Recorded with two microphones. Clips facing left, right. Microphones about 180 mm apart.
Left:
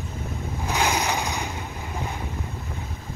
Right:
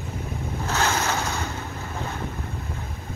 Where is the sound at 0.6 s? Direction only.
15° left (ahead or behind).